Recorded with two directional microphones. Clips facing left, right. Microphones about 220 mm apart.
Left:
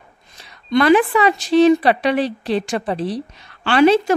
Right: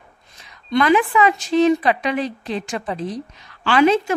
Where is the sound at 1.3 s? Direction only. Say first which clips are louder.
Left 7 dB; 75° left (ahead or behind).